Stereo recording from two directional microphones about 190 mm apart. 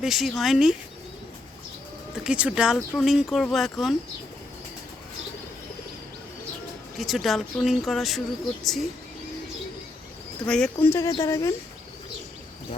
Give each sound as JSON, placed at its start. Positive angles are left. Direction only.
{"t": 0.0, "sound": "speech", "side_deg": 0}
{"t": 2.2, "sound": "speech", "side_deg": -5}
{"t": 6.9, "sound": "speech", "side_deg": 0}
{"t": 10.4, "sound": "speech", "side_deg": 5}